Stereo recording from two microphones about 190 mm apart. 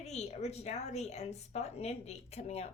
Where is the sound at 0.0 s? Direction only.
35° left (ahead or behind).